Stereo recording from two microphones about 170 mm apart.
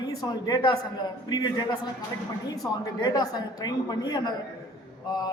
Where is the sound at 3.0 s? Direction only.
25° left (ahead or behind).